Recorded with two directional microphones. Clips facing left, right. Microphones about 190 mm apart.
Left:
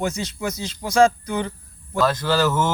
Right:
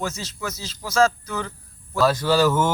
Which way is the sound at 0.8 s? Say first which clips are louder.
Left 3 dB; 15° left (ahead or behind).